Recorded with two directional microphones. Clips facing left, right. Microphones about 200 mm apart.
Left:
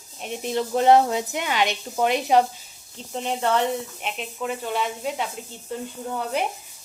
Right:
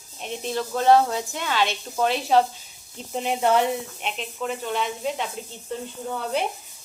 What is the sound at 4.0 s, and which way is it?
Speech, 5° left (ahead or behind).